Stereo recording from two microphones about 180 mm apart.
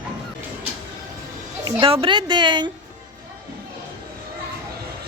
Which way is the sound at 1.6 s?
30° right (ahead or behind).